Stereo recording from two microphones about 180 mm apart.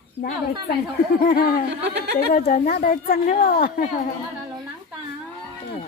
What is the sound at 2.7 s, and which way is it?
A woman's voice, 55° left (ahead or behind).